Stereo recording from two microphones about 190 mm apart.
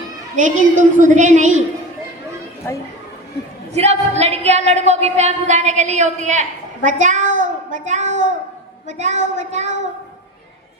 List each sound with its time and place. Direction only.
0.3 s a woman's voice: 40° right (ahead or behind)
3.7 s a woman's voice: 35° right (ahead or behind)